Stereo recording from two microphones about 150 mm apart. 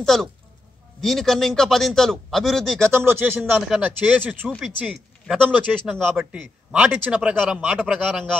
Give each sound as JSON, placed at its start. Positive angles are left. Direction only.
{"t": 0.0, "sound": "a man's voice", "side_deg": 0}
{"t": 2.9, "sound": "speech", "side_deg": -15}
{"t": 3.3, "sound": "a man's voice", "side_deg": 0}